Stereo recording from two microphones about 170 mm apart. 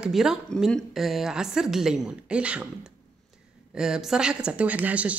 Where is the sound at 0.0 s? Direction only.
5° right (ahead or behind).